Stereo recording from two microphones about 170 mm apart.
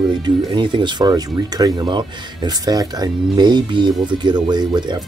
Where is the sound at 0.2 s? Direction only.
25° right (ahead or behind).